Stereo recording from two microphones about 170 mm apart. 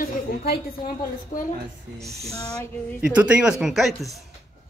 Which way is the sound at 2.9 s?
10° right (ahead or behind).